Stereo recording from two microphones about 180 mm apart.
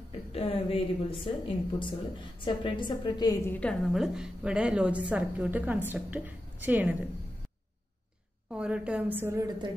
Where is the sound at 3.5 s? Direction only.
5° left (ahead or behind).